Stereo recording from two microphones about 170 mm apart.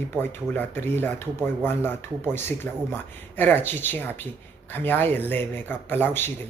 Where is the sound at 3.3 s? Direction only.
10° left (ahead or behind).